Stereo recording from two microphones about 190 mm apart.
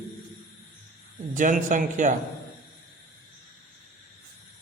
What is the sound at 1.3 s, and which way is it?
Speech, 45° right (ahead or behind).